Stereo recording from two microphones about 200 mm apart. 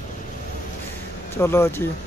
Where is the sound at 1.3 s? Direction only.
10° left (ahead or behind).